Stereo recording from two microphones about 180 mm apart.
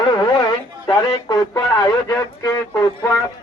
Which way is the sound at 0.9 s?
20° left (ahead or behind).